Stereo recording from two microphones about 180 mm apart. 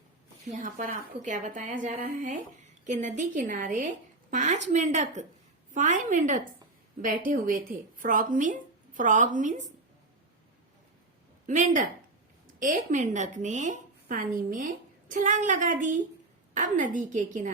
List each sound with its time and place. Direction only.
0.4 s a woman's voice: 45° right (ahead or behind)
11.4 s a woman's voice: 45° right (ahead or behind)